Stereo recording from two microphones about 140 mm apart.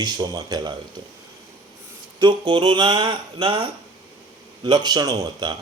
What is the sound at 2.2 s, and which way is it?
Speech, 35° right (ahead or behind).